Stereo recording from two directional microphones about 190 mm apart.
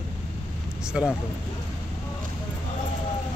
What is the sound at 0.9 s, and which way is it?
Speech, 5° right (ahead or behind).